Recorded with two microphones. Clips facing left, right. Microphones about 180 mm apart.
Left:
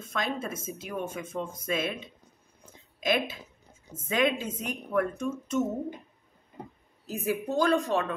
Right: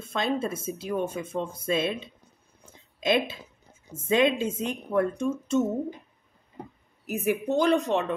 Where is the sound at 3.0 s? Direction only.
25° right (ahead or behind).